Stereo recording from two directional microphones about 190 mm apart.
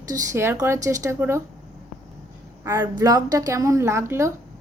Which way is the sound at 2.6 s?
15° right (ahead or behind).